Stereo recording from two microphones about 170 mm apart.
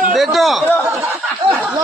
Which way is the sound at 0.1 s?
Centre (ahead or behind).